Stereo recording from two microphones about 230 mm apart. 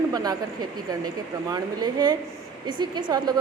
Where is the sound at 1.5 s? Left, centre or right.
Centre.